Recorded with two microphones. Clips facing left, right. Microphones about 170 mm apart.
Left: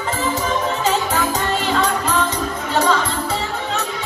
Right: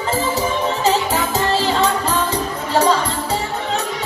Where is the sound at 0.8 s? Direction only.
35° right (ahead or behind).